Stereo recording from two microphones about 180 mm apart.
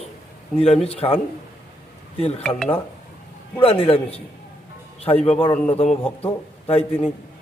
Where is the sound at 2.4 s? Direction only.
5° left (ahead or behind).